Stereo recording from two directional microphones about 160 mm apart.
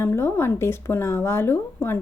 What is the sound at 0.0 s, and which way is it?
A woman's voice, 15° left (ahead or behind).